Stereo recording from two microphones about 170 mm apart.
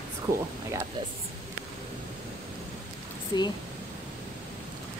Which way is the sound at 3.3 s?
25° left (ahead or behind).